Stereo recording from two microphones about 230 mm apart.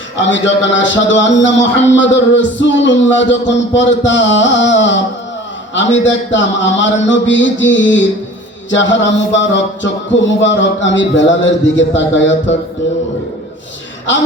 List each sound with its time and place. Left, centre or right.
0.3 s speech: left